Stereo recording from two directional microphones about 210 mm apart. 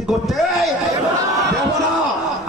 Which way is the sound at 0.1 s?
Centre (ahead or behind).